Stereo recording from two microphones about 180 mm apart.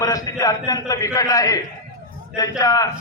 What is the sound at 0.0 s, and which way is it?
A man's voice, 20° left (ahead or behind).